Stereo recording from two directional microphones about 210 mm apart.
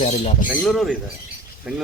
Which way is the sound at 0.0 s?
35° left (ahead or behind).